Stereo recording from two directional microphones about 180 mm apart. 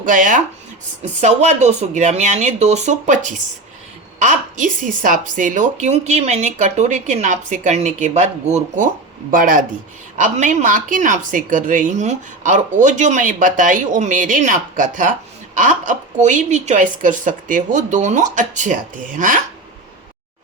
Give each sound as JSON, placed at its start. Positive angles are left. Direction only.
{"t": 0.0, "sound": "a woman's voice", "side_deg": -45}